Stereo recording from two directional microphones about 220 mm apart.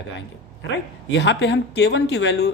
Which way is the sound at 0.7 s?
50° left (ahead or behind).